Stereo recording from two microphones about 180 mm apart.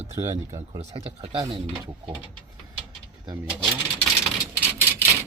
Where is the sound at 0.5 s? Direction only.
30° right (ahead or behind).